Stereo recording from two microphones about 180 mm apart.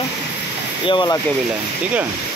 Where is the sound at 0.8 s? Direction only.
25° left (ahead or behind).